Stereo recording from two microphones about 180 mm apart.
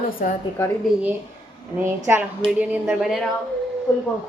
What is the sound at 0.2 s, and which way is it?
Speech, 45° left (ahead or behind).